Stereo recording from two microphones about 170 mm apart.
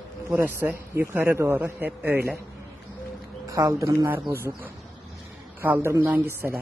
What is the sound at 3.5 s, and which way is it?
A man's voice, 20° right (ahead or behind).